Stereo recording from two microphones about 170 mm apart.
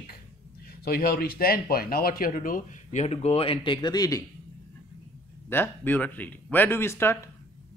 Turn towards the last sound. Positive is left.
turn(degrees=15)  # may be behind; listen again after turning